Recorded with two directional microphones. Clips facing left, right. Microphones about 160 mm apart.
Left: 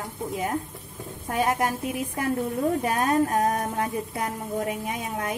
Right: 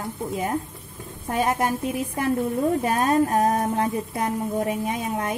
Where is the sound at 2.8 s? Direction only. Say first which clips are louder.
Right 2 dB; 30° right (ahead or behind).